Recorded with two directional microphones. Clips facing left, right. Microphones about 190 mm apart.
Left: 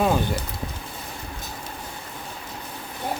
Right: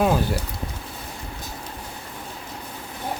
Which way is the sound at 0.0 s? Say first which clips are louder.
Right 1 dB; 5° right (ahead or behind).